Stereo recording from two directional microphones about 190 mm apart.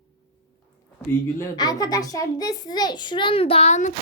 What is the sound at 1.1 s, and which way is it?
A child's voice, 15° left (ahead or behind).